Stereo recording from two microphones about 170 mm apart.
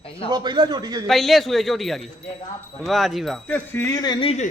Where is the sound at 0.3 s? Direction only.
25° right (ahead or behind).